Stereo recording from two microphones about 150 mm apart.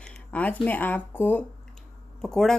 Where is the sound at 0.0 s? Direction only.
10° left (ahead or behind).